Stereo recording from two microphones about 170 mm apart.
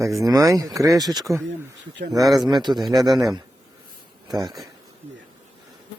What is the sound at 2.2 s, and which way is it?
Speech, centre (ahead or behind).